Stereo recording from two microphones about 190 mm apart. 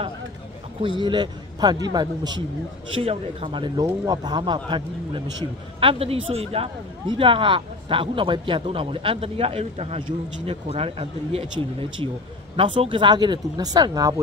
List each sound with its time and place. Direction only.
0.8 s speech: 25° right (ahead or behind)
12.5 s speech: 25° right (ahead or behind)